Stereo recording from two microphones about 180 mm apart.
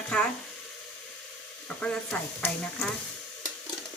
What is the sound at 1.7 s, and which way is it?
Speech, 5° left (ahead or behind).